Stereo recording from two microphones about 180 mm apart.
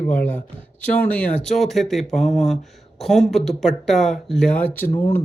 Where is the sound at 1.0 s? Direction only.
5° left (ahead or behind).